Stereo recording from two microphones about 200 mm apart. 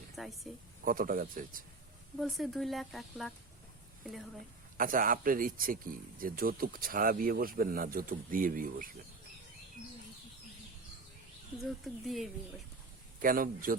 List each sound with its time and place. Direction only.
0.2 s speech: centre (ahead or behind)
0.9 s speech: 45° right (ahead or behind)
2.1 s speech: centre (ahead or behind)
4.8 s speech: 45° right (ahead or behind)
11.5 s speech: centre (ahead or behind)
13.1 s speech: 45° right (ahead or behind)